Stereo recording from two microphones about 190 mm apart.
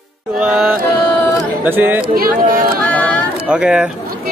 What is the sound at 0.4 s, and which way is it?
Speech, 5° right (ahead or behind).